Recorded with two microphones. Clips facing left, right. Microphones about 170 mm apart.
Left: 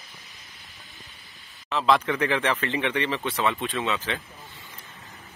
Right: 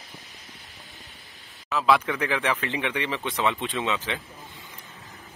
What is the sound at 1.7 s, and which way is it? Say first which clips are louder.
A man's voice: even; 5° right (ahead or behind).